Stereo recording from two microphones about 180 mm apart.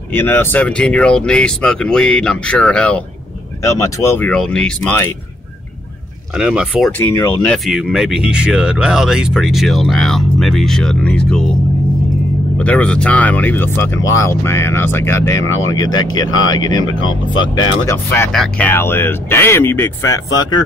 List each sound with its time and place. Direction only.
0.1 s speech: 10° left (ahead or behind)
6.3 s speech: 5° right (ahead or behind)
7.0 s speech: 15° left (ahead or behind)
12.5 s speech: 5° left (ahead or behind)